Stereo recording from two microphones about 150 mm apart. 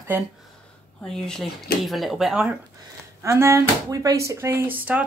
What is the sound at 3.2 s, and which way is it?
Speech, 20° right (ahead or behind).